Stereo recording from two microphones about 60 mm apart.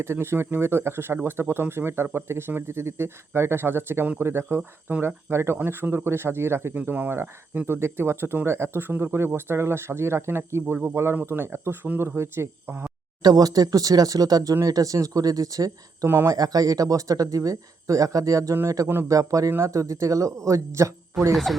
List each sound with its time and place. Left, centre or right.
0.0 s speech: right
6.7 s speech: right
7.7 s speech: right
13.3 s speech: right
19.5 s speech: right
21.2 s speech: centre